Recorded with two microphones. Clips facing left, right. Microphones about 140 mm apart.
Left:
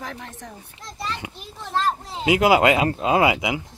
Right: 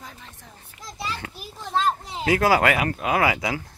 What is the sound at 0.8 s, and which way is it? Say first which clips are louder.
A child's voice: left 1 dB; centre (ahead or behind).